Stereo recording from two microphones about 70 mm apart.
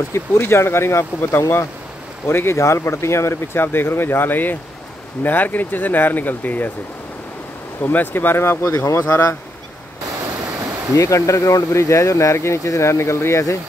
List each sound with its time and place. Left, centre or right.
0.1 s speech: left
7.8 s speech: left
11.0 s speech: left